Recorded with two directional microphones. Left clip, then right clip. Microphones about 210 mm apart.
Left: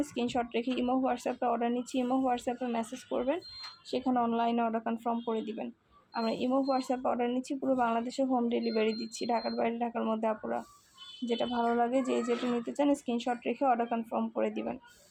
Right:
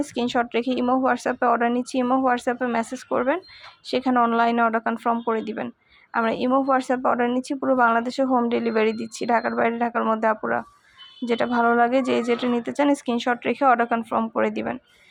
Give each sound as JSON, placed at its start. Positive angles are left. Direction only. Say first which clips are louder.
{"t": 0.0, "sound": "a woman's voice", "louder": "right 9 dB", "side_deg": -15}
{"t": 11.5, "sound": "a woman's voice", "louder": "right 11 dB", "side_deg": -20}